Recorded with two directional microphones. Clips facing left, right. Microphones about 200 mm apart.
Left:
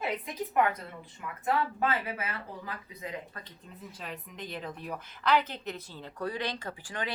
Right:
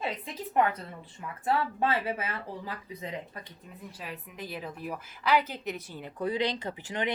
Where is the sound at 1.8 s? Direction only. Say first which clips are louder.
Right 2 dB; 30° right (ahead or behind).